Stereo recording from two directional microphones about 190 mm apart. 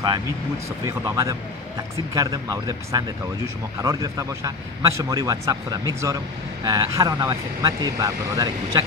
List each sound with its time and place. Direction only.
0.8 s a man's voice: 15° right (ahead or behind)